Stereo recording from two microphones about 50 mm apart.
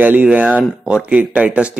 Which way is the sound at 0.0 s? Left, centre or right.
Right.